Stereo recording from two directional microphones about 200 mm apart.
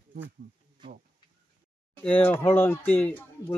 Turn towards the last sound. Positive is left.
turn(degrees=10)  # may be behind; listen again after turning